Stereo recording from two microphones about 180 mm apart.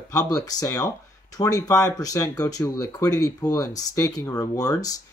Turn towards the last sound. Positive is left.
turn(degrees=20)  # may be behind; listen again after turning